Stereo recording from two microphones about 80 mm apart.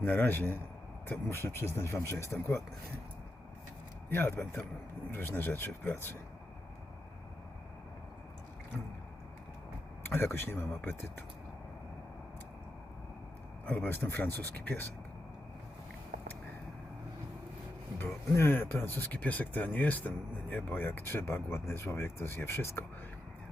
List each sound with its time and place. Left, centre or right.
0.0 s speech: left
4.1 s speech: left
10.0 s speech: left
13.7 s speech: left
17.9 s speech: left